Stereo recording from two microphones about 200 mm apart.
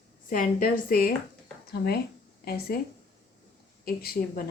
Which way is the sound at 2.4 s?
50° left (ahead or behind).